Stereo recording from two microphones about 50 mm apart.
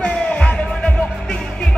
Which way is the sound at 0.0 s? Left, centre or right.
Left.